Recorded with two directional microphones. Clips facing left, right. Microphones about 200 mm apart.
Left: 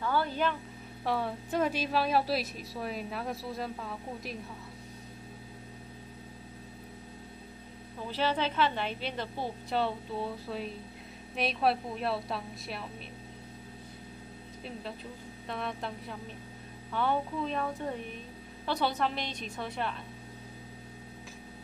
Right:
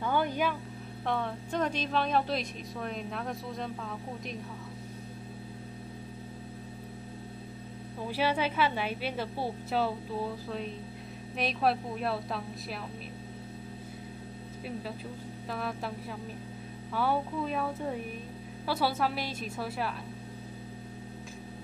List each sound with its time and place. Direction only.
0.0 s a sound: 15° right (ahead or behind)
1.0 s a woman's voice: 5° left (ahead or behind)
8.1 s a woman's voice: 10° right (ahead or behind)
15.5 s a woman's voice: 5° right (ahead or behind)